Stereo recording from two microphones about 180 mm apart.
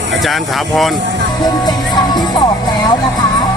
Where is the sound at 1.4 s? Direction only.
20° left (ahead or behind).